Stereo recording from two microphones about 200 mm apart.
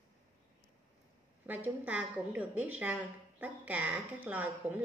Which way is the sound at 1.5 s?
5° right (ahead or behind).